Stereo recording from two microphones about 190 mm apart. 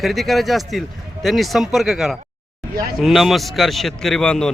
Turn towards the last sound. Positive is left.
turn(degrees=5)  # may be behind; listen again after turning